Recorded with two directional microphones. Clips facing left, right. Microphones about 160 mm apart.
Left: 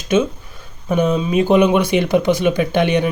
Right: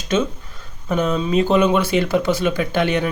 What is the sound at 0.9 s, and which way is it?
Speech, 15° left (ahead or behind).